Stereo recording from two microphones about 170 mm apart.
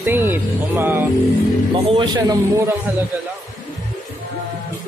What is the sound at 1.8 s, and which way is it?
Speech, 25° right (ahead or behind).